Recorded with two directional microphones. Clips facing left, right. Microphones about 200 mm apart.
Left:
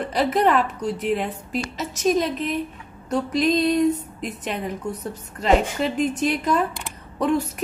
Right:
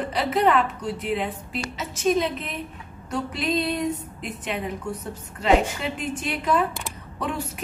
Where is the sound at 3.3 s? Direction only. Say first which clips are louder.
Left 6 dB; 40° left (ahead or behind).